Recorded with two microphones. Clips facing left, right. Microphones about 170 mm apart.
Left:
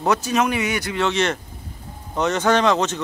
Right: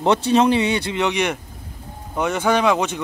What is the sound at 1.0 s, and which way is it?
A man's voice, 15° right (ahead or behind).